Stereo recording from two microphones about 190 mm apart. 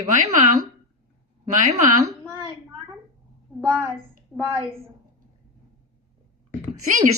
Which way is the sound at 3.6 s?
10° right (ahead or behind).